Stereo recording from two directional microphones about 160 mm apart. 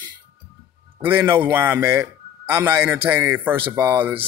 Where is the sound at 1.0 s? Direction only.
15° right (ahead or behind).